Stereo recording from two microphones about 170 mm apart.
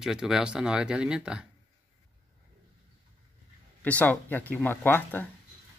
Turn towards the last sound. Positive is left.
turn(degrees=10)  # may be behind; listen again after turning